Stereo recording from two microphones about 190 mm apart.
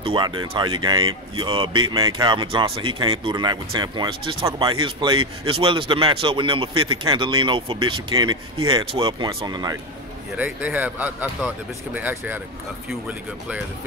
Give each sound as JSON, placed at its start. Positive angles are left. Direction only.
{"t": 0.0, "sound": "speech", "side_deg": -25}
{"t": 5.1, "sound": "a man's voice", "side_deg": -90}
{"t": 5.5, "sound": "speech", "side_deg": -25}
{"t": 10.3, "sound": "speech", "side_deg": -10}